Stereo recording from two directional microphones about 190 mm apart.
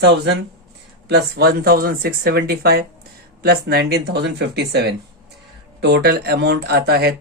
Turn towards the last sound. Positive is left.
turn(degrees=-55)  # may be behind; listen again after turning